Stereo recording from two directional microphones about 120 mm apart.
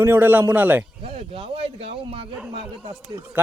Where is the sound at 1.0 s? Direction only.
50° right (ahead or behind).